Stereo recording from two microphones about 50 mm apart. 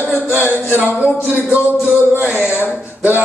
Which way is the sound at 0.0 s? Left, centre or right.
Left.